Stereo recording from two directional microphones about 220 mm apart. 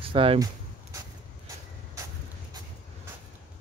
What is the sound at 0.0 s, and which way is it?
Speech, 25° right (ahead or behind).